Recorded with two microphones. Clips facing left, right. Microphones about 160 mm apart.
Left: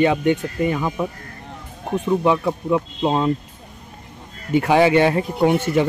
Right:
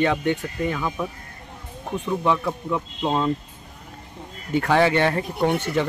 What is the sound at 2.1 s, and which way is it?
Speech, 15° left (ahead or behind).